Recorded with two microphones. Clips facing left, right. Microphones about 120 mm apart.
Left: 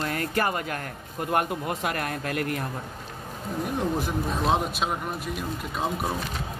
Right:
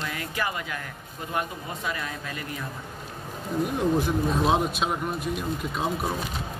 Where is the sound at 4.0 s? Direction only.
Centre (ahead or behind).